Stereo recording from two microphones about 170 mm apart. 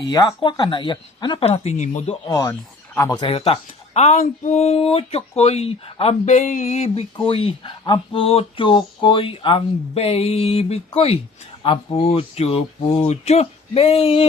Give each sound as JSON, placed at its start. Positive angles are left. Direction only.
{"t": 0.0, "sound": "speech", "side_deg": 25}
{"t": 2.2, "sound": "speech", "side_deg": 20}
{"t": 3.2, "sound": "speech", "side_deg": 35}